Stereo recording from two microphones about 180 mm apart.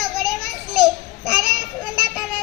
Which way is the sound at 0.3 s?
Centre (ahead or behind).